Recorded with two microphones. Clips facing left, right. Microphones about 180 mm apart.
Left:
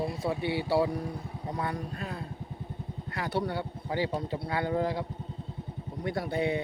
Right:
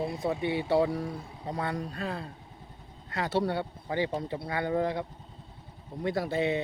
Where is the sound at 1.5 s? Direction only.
80° right.